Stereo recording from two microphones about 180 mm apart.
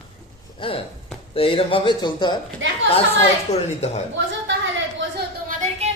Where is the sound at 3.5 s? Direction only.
35° left (ahead or behind).